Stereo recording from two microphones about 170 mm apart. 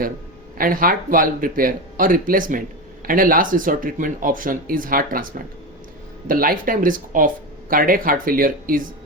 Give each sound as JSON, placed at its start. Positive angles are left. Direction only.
{"t": 0.6, "sound": "speech", "side_deg": -55}
{"t": 6.2, "sound": "speech", "side_deg": -55}